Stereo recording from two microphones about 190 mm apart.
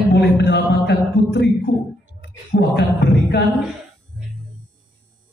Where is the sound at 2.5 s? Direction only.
60° left (ahead or behind).